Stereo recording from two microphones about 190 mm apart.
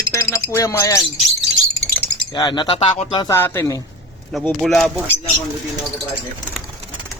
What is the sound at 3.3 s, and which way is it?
Speech, 15° left (ahead or behind).